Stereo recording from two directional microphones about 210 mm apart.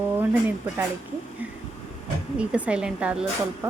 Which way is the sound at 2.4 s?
5° right (ahead or behind).